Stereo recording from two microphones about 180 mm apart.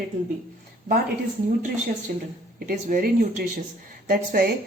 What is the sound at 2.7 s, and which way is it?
A woman's voice, 50° right (ahead or behind).